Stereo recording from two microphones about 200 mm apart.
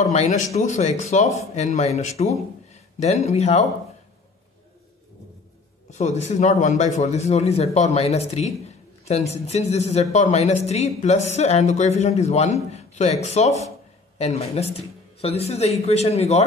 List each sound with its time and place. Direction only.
0.1 s speech: 35° left (ahead or behind)
5.9 s speech: 35° left (ahead or behind)